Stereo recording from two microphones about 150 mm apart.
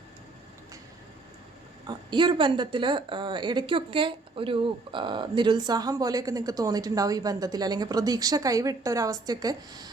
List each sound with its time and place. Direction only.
1.9 s a woman's voice: 30° right (ahead or behind)